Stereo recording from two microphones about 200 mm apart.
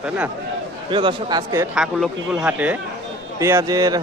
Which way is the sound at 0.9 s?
25° right (ahead or behind).